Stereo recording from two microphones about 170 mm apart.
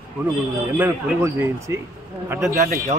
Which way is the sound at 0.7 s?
15° right (ahead or behind).